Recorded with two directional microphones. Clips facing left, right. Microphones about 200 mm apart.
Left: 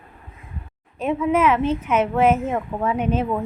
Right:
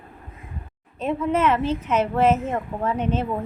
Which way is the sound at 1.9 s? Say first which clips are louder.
Left 1 dB; 10° left (ahead or behind).